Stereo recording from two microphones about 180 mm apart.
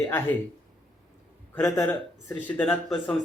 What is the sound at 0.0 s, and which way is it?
Speech, 10° left (ahead or behind).